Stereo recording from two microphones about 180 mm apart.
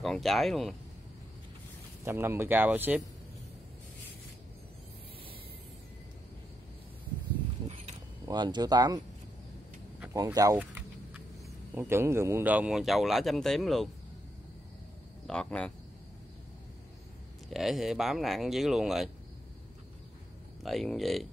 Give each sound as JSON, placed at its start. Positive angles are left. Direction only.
{"t": 0.0, "sound": "speech", "side_deg": 0}
{"t": 2.0, "sound": "speech", "side_deg": -15}
{"t": 8.3, "sound": "speech", "side_deg": -25}
{"t": 10.1, "sound": "speech", "side_deg": -20}
{"t": 11.7, "sound": "speech", "side_deg": -10}
{"t": 15.2, "sound": "speech", "side_deg": 5}
{"t": 17.5, "sound": "speech", "side_deg": 0}
{"t": 20.6, "sound": "speech", "side_deg": 0}